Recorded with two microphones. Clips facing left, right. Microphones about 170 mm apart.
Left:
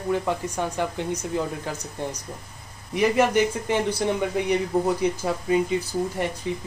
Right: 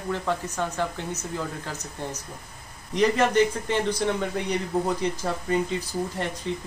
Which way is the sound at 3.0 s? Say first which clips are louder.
Left 1 dB; 10° left (ahead or behind).